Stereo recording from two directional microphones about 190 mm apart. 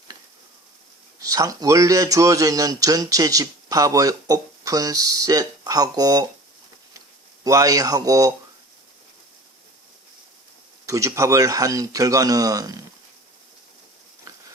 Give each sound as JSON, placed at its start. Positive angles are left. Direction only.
{"t": 1.2, "sound": "speech", "side_deg": -20}
{"t": 7.4, "sound": "speech", "side_deg": -15}
{"t": 10.8, "sound": "speech", "side_deg": -15}